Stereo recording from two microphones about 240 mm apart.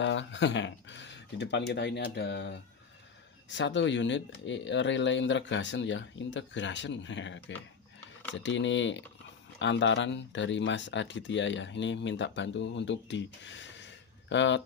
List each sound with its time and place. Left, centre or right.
0.0 s speech: left